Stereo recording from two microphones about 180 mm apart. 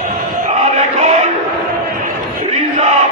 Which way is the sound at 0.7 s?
40° right (ahead or behind).